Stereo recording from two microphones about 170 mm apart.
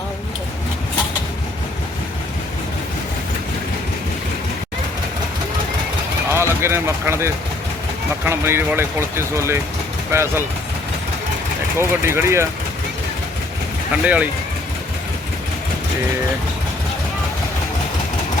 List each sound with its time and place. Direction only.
6.3 s speech: 15° right (ahead or behind)
11.8 s speech: 15° right (ahead or behind)
14.0 s speech: 10° right (ahead or behind)